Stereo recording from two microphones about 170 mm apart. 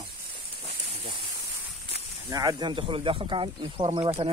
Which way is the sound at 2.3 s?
20° right (ahead or behind).